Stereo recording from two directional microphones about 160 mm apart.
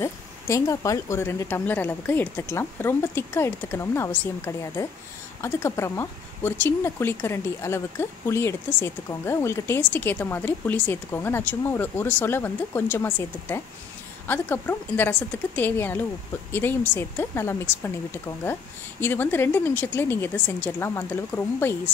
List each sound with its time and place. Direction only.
0.0 s speech: 20° left (ahead or behind)